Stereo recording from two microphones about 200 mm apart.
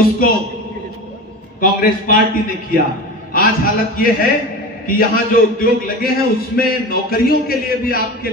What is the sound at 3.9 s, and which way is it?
A man's voice, 45° left (ahead or behind).